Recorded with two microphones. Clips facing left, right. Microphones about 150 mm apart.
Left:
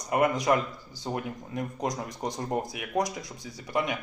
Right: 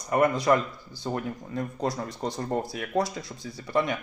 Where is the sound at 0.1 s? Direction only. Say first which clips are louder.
Right 2 dB; 15° left (ahead or behind).